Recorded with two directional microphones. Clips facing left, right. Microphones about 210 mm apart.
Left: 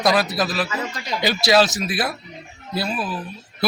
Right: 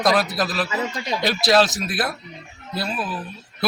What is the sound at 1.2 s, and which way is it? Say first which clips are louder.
Speech: left 1 dB; centre (ahead or behind).